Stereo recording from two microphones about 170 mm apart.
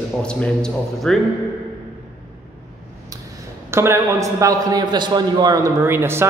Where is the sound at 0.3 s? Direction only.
5° left (ahead or behind).